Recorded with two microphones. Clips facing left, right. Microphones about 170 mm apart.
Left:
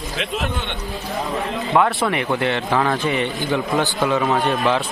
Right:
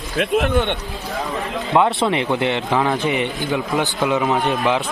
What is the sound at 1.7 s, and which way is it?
A man's voice, 20° right (ahead or behind).